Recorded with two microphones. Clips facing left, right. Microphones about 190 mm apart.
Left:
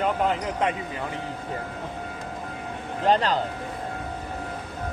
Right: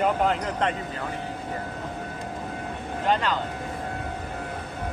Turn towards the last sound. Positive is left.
turn(degrees=35)  # may be behind; listen again after turning